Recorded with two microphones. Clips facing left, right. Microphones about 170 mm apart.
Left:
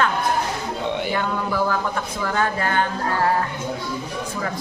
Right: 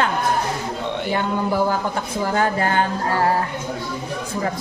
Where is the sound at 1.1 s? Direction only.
25° right (ahead or behind).